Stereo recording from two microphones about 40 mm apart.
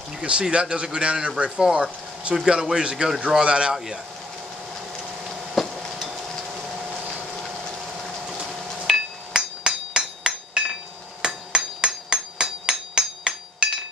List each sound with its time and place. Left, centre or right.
0.2 s speech: right
5.3 s a sound: centre
8.8 s hammer: centre